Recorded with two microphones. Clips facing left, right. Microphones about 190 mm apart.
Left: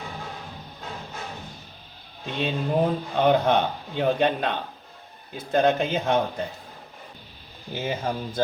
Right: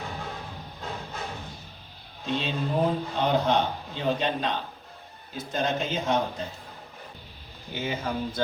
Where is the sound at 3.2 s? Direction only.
60° left (ahead or behind).